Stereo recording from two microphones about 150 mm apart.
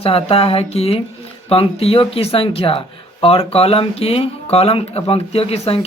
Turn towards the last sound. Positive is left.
turn(degrees=40)  # may be behind; listen again after turning